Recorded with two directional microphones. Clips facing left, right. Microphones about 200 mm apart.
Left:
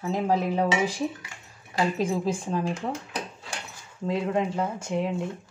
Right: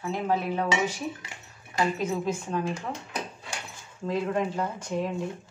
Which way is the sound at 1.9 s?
30° left (ahead or behind).